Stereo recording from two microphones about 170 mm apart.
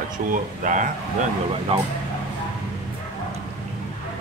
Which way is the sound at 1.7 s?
35° right (ahead or behind).